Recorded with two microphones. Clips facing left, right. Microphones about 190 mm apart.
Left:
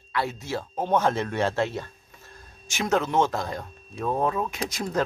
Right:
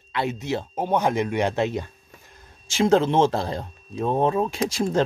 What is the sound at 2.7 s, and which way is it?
Speech, 30° right (ahead or behind).